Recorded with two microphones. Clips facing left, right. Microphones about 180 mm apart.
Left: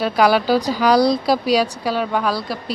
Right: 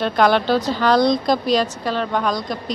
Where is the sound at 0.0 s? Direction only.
5° left (ahead or behind).